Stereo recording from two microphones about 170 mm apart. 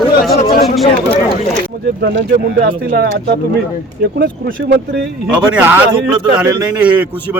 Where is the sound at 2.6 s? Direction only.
65° right (ahead or behind).